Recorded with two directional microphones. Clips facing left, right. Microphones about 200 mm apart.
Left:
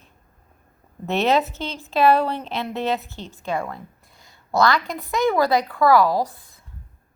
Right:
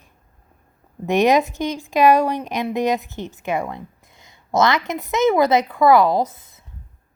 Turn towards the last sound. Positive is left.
turn(degrees=-20)  # may be behind; listen again after turning